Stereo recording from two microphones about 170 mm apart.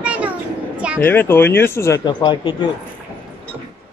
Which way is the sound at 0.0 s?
10° right (ahead or behind).